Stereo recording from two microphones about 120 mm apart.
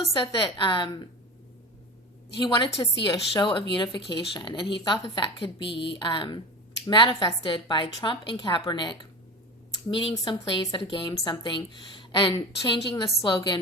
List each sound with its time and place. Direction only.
0.0 s speech: 30° left (ahead or behind)
0.6 s a woman's voice: 45° left (ahead or behind)
2.5 s a woman's voice: 40° left (ahead or behind)